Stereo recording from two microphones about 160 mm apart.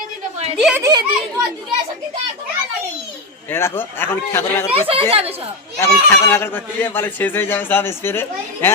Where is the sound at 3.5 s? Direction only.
15° left (ahead or behind).